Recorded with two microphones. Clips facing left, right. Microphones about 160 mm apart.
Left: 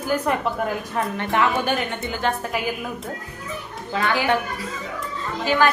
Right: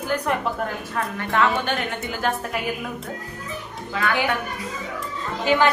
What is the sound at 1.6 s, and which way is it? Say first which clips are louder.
A woman's voice: left 2 dB; centre (ahead or behind).